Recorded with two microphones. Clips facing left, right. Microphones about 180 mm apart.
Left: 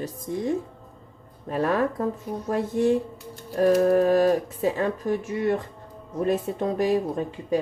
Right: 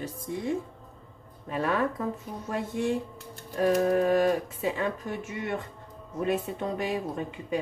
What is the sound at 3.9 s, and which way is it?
Speech, 40° left (ahead or behind).